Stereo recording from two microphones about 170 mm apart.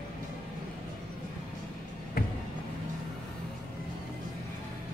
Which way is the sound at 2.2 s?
60° left (ahead or behind).